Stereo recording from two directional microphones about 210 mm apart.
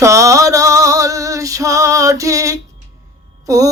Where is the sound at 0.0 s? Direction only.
15° right (ahead or behind).